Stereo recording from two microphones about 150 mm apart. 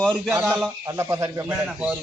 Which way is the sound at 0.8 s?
20° right (ahead or behind).